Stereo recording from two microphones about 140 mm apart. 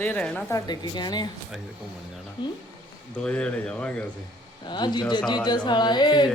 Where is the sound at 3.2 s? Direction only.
5° left (ahead or behind).